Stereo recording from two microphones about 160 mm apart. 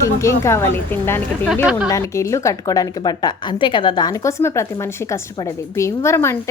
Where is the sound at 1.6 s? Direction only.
5° right (ahead or behind).